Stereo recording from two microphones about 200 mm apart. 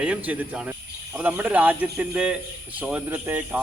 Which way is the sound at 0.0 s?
5° right (ahead or behind).